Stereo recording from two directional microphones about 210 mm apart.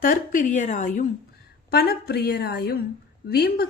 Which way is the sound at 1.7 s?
50° left (ahead or behind).